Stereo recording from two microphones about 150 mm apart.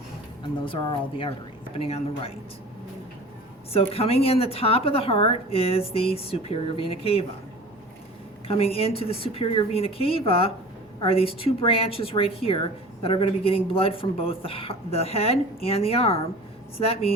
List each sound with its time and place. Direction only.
0.6 s a woman's voice: 35° left (ahead or behind)
3.7 s a woman's voice: 40° left (ahead or behind)
8.4 s a woman's voice: 40° left (ahead or behind)